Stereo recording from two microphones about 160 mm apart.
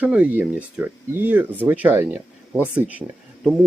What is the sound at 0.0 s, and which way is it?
Speech, 10° right (ahead or behind).